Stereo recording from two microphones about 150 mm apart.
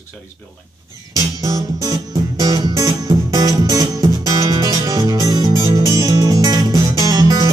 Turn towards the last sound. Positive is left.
turn(degrees=-25)  # may be behind; listen again after turning